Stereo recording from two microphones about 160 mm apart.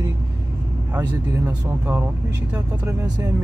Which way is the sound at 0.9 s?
15° right (ahead or behind).